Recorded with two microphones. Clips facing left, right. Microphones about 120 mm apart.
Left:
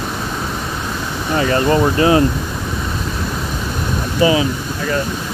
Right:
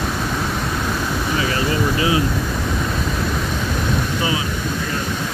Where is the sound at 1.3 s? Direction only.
45° left (ahead or behind).